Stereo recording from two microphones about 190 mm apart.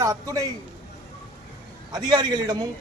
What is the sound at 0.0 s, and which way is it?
Speech, 15° right (ahead or behind).